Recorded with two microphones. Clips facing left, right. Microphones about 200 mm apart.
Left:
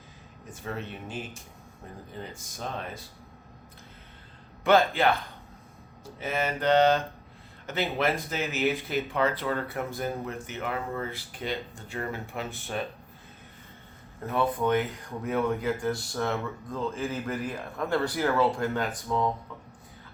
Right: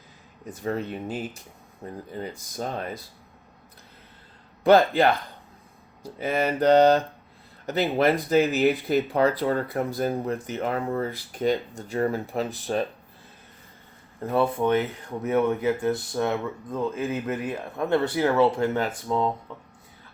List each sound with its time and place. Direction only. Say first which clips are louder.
0.5 s speech: right 7 dB; 40° right (ahead or behind)
4.6 s speech: right 4 dB; 35° right (ahead or behind)
14.3 s speech: right 4 dB; 30° right (ahead or behind)